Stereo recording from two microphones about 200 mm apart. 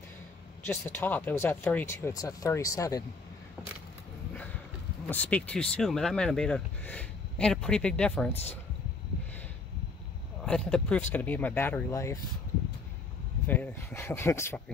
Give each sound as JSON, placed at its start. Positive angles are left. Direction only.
{"t": 0.7, "sound": "speech", "side_deg": 10}
{"t": 5.0, "sound": "speech", "side_deg": 5}
{"t": 8.3, "sound": "speech", "side_deg": 30}
{"t": 10.4, "sound": "speech", "side_deg": 5}
{"t": 13.5, "sound": "speech", "side_deg": 10}